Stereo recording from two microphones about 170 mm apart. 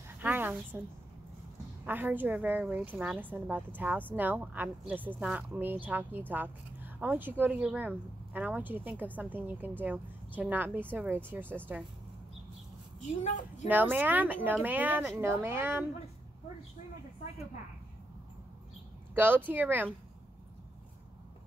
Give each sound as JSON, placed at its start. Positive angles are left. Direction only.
{"t": 0.2, "sound": "a sound", "side_deg": -10}
{"t": 1.9, "sound": "a woman's voice", "side_deg": -10}
{"t": 13.0, "sound": "a woman's voice", "side_deg": 45}
{"t": 13.7, "sound": "a woman's voice", "side_deg": -10}
{"t": 19.1, "sound": "a woman's voice", "side_deg": -10}